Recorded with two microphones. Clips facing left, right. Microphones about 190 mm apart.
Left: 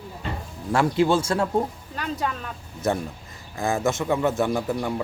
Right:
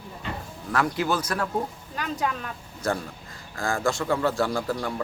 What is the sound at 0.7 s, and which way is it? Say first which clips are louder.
Speech: left 5 dB; 25° left (ahead or behind).